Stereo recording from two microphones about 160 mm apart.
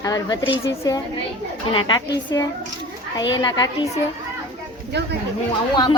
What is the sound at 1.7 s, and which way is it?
Speech, 30° left (ahead or behind).